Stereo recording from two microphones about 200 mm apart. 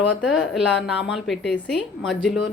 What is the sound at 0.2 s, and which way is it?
A woman's voice, centre (ahead or behind).